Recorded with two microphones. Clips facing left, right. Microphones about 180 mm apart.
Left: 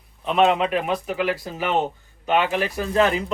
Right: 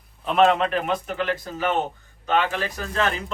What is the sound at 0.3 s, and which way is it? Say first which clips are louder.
Speech: even; centre (ahead or behind).